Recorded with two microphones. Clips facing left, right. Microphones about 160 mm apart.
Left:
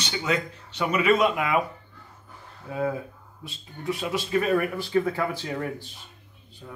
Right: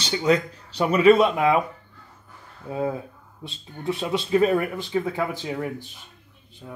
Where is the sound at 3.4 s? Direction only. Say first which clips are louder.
Right 4 dB; 25° right (ahead or behind).